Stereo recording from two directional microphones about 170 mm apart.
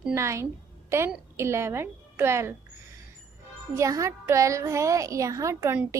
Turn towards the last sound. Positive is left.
turn(degrees=-15)  # may be behind; listen again after turning